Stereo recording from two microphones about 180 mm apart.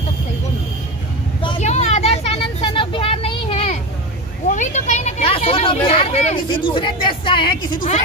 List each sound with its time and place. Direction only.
1.6 s vehicle: 40° left (ahead or behind)
4.5 s a sound: 45° left (ahead or behind)
6.5 s speech: 30° left (ahead or behind)